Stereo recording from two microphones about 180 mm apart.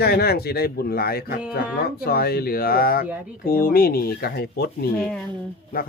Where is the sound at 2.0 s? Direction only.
60° left (ahead or behind).